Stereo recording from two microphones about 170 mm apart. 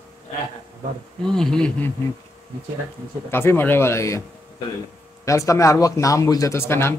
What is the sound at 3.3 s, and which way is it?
Speech, 15° left (ahead or behind).